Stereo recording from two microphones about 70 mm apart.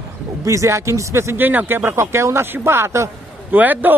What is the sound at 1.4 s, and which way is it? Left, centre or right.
Speech, right.